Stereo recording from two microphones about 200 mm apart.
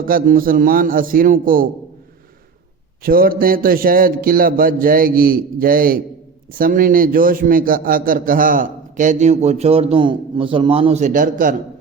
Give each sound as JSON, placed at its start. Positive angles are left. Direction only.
{"t": 0.0, "sound": "a man's voice", "side_deg": -45}
{"t": 3.0, "sound": "a man's voice", "side_deg": -45}